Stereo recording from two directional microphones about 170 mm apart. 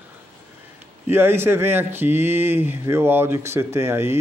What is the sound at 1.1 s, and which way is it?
Speech, 15° right (ahead or behind).